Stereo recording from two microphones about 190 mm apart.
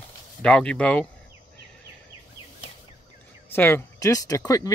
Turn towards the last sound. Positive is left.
turn(degrees=20)  # may be behind; listen again after turning